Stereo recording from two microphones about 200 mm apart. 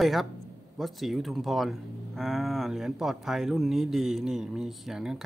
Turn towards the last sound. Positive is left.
turn(degrees=0)  # may be behind; listen again after turning